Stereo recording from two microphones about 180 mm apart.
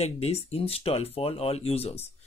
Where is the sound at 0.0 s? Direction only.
35° left (ahead or behind).